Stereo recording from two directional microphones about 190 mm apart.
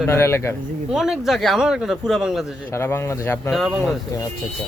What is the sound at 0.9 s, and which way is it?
A man's voice, centre (ahead or behind).